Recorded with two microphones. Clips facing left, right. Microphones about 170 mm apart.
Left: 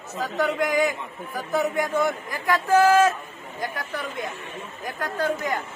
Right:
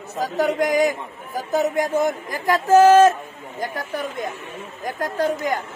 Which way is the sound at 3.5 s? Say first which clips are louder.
Right 4 dB; 45° right (ahead or behind).